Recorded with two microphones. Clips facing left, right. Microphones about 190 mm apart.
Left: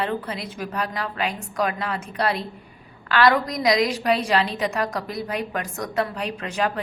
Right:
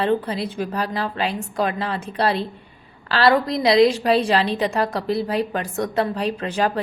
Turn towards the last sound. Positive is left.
turn(degrees=-35)  # may be behind; listen again after turning